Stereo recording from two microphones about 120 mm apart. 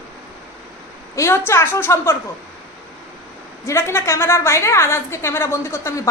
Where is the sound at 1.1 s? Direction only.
25° left (ahead or behind).